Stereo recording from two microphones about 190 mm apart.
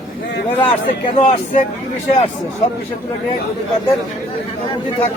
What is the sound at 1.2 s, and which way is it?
Speech, 35° left (ahead or behind).